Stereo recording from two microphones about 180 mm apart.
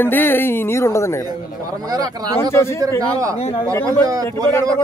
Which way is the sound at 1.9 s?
20° right (ahead or behind).